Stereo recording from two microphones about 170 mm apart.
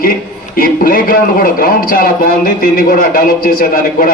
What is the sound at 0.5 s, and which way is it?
A man's voice, 55° left (ahead or behind).